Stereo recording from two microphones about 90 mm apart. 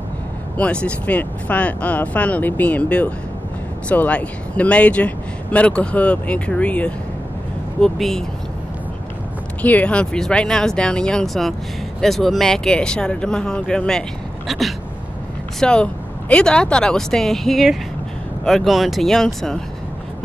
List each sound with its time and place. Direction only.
0.6 s speech: 15° left (ahead or behind)
9.6 s speech: 15° left (ahead or behind); by 14.6 s centre (ahead or behind)
15.6 s speech: 10° left (ahead or behind)